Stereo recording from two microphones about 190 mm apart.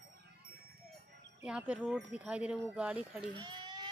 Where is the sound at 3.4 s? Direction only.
25° right (ahead or behind).